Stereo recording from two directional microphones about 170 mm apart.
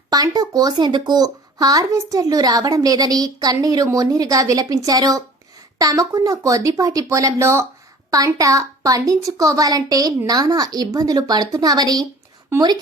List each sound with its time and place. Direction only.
0.1 s speech: 20° right (ahead or behind)